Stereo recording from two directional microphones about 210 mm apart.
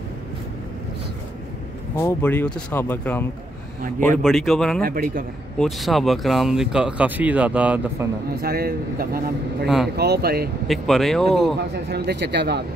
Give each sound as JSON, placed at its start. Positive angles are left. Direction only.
{"t": 2.0, "sound": "speech", "side_deg": 10}
{"t": 4.8, "sound": "a man's voice", "side_deg": -45}
{"t": 5.6, "sound": "speech", "side_deg": 0}
{"t": 8.4, "sound": "a man's voice", "side_deg": -45}
{"t": 10.7, "sound": "speech", "side_deg": 0}
{"t": 11.7, "sound": "a man's voice", "side_deg": -50}